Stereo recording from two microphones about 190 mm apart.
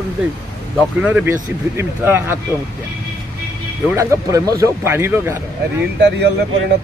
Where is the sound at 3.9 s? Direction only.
15° right (ahead or behind).